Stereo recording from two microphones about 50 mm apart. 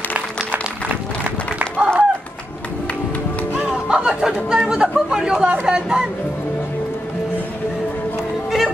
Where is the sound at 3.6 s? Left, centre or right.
Centre.